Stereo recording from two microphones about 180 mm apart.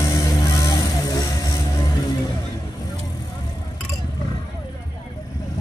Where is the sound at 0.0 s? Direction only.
20° left (ahead or behind).